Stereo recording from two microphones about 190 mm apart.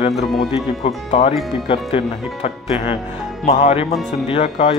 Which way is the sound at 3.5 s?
30° left (ahead or behind).